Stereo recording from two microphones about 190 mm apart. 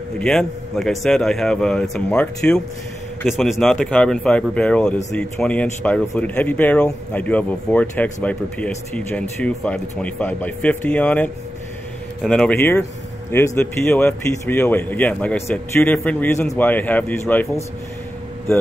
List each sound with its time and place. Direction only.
0.2 s a man's voice: centre (ahead or behind)